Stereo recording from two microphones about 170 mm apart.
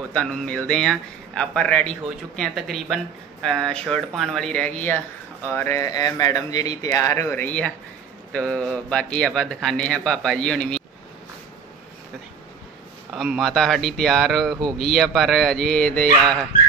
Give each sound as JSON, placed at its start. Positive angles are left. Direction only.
{"t": 0.1, "sound": "a man's voice", "side_deg": 5}
{"t": 13.1, "sound": "a man's voice", "side_deg": 0}